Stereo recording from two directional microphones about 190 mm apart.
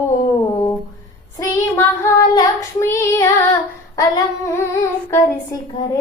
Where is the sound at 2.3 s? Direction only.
20° left (ahead or behind).